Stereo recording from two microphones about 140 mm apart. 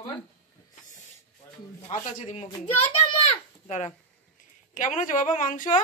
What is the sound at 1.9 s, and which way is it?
Speech, 55° left (ahead or behind).